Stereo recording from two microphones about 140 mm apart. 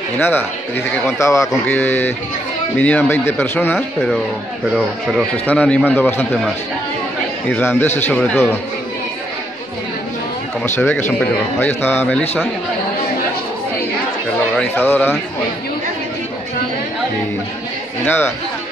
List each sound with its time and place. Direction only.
0.2 s a man's voice: 15° left (ahead or behind)
5.5 s a man's voice: 10° left (ahead or behind)
7.4 s a man's voice: 15° left (ahead or behind)
10.6 s a man's voice: 15° left (ahead or behind)
14.6 s a man's voice: 15° left (ahead or behind)
18.0 s a man's voice: 15° left (ahead or behind)